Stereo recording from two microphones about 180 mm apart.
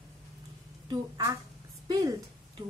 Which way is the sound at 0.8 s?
20° right (ahead or behind).